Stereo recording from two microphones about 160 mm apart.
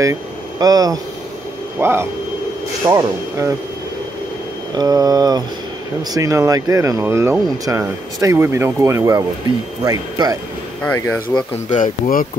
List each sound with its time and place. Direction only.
0.0 s speech: 20° right (ahead or behind)
4.7 s speech: 25° right (ahead or behind)
10.8 s speech: 10° left (ahead or behind)
11.7 s speech: 60° left (ahead or behind)